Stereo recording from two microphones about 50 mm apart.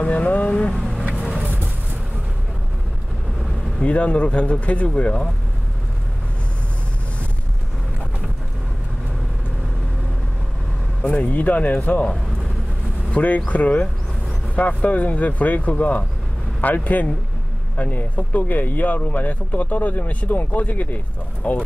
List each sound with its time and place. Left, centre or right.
0.0 s speech: left
3.8 s speech: left
11.0 s speech: left
13.1 s speech: left